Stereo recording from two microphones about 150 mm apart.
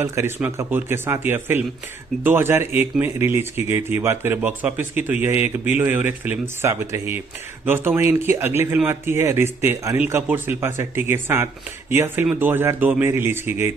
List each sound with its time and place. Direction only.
0.0 s speech: 15° right (ahead or behind)